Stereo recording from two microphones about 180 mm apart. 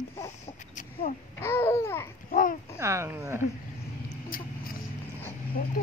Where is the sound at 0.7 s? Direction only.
45° left (ahead or behind).